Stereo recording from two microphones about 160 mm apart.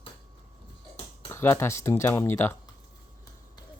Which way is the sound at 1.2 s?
15° left (ahead or behind).